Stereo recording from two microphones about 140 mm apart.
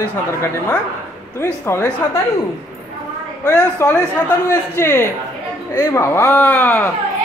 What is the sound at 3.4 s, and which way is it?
Speech, 15° left (ahead or behind).